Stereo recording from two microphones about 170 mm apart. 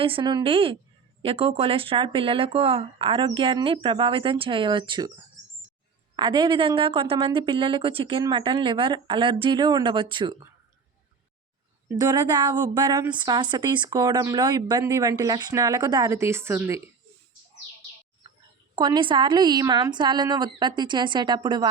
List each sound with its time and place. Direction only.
0.0 s speech: 30° right (ahead or behind)
6.1 s a woman's voice: 25° right (ahead or behind)
11.9 s a woman's voice: 25° right (ahead or behind)
18.8 s a woman's voice: 25° right (ahead or behind)